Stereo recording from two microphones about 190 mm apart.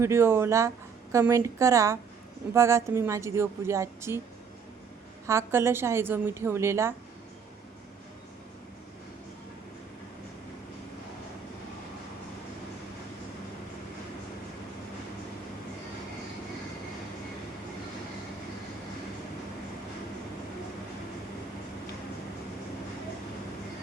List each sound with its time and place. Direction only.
0.0 s a woman's voice: 15° right (ahead or behind)
5.2 s a woman's voice: 15° right (ahead or behind)